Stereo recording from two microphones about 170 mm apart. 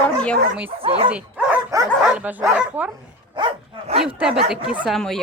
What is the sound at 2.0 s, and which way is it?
Speech, 5° right (ahead or behind).